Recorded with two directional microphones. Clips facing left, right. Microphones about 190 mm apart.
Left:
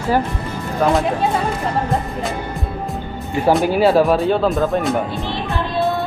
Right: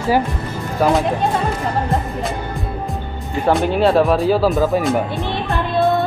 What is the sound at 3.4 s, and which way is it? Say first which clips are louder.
Speech: left 1 dB; 5° left (ahead or behind).